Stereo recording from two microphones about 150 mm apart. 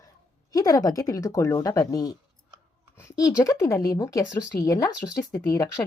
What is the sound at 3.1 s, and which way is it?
A woman's voice, 25° left (ahead or behind).